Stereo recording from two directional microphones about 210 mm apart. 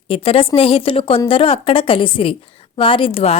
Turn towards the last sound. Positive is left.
turn(degrees=30)  # may be behind; listen again after turning